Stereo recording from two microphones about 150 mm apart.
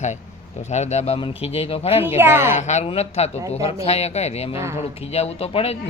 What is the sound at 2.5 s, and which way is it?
Speech, 50° left (ahead or behind).